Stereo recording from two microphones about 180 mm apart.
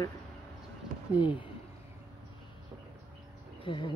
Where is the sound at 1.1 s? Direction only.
25° left (ahead or behind).